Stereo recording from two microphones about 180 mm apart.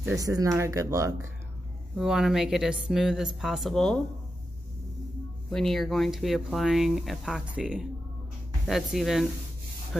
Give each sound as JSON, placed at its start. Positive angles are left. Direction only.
{"t": 0.0, "sound": "speech", "side_deg": -20}
{"t": 2.0, "sound": "speech", "side_deg": 0}
{"t": 5.5, "sound": "speech", "side_deg": 0}